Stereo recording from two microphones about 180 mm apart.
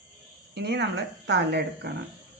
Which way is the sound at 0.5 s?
70° right (ahead or behind).